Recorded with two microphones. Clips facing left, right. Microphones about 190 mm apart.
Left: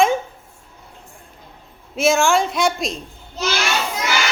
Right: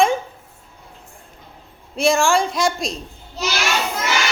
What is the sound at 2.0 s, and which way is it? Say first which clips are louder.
Speech: even; centre (ahead or behind).